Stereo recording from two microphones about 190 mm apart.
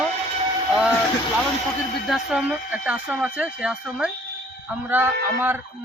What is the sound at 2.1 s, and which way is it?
Speech, 5° right (ahead or behind).